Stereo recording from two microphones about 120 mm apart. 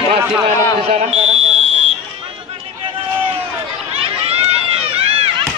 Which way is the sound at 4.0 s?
55° right (ahead or behind).